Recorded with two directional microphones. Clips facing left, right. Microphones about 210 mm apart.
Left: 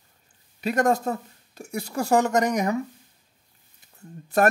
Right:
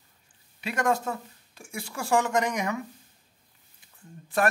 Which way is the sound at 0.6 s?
40° left (ahead or behind).